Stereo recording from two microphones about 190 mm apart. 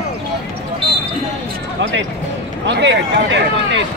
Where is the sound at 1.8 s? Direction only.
75° right (ahead or behind).